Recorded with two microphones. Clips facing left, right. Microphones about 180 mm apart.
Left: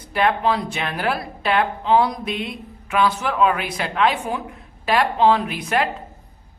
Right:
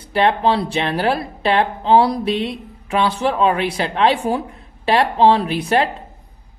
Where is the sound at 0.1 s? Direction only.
30° right (ahead or behind).